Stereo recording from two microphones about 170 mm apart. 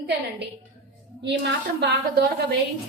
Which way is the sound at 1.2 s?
90° right.